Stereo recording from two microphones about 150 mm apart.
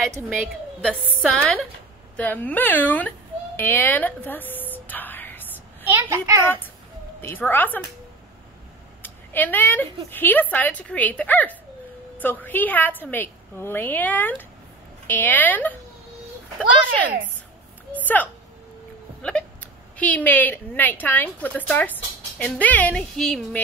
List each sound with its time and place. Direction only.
1.2 s speech: 5° left (ahead or behind)
3.5 s a sound: 15° left (ahead or behind)
5.9 s a child's voice: 15° right (ahead or behind)
7.2 s speech: 15° left (ahead or behind)
9.0 s a woman's voice: 15° left (ahead or behind)